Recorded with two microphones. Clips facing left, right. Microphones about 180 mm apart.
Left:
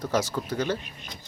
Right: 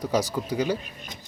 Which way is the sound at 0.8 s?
45° right (ahead or behind).